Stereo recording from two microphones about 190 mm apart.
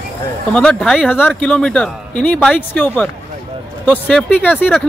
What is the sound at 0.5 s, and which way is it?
Speech, 5° left (ahead or behind).